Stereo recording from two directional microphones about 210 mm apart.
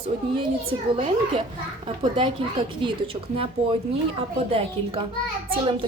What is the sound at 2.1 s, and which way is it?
Speech, 25° right (ahead or behind).